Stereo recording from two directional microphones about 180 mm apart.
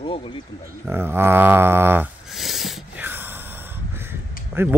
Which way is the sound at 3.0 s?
10° right (ahead or behind).